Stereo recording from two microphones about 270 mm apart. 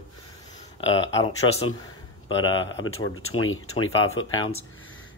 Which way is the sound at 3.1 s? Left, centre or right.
Left.